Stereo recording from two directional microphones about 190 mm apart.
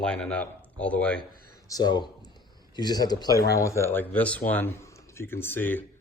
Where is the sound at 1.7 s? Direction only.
20° left (ahead or behind).